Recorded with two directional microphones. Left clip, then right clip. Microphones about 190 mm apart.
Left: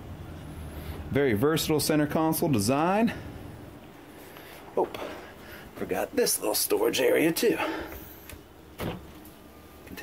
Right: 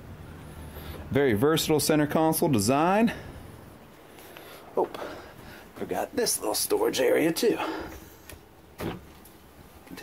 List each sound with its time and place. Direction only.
0.8 s speech: 30° right (ahead or behind)
4.7 s speech: 10° right (ahead or behind)